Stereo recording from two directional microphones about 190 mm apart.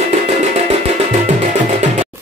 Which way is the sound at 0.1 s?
35° right (ahead or behind).